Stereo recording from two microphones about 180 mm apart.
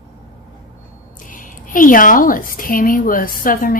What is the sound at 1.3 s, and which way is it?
A woman's voice, 50° left (ahead or behind).